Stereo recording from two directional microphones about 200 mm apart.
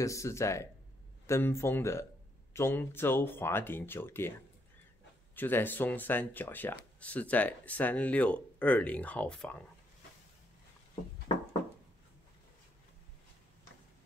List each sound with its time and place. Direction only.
0.0 s speech: 15° left (ahead or behind)
5.3 s speech: 10° left (ahead or behind)